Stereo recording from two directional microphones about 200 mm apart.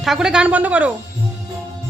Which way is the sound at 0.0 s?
Centre (ahead or behind).